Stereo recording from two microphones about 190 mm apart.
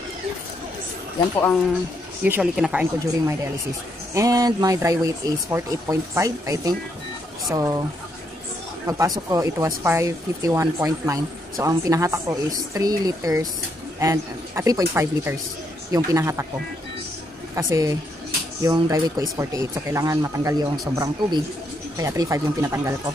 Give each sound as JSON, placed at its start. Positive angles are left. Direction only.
{"t": 2.2, "sound": "speech", "side_deg": -5}
{"t": 4.1, "sound": "speech", "side_deg": -15}
{"t": 8.8, "sound": "speech", "side_deg": -15}
{"t": 17.6, "sound": "speech", "side_deg": -20}